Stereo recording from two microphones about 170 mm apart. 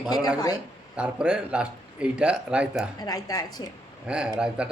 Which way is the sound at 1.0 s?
5° right (ahead or behind).